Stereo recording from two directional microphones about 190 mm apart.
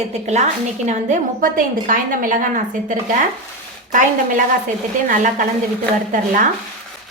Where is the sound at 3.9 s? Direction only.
40° right (ahead or behind).